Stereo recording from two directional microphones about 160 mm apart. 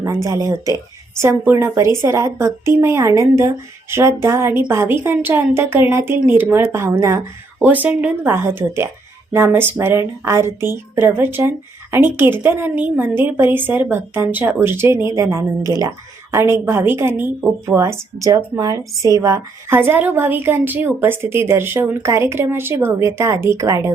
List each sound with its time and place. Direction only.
0.0 s a woman's voice: 20° right (ahead or behind)